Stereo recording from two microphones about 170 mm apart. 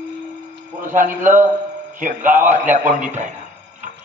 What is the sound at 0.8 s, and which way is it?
A man's voice, 50° right (ahead or behind).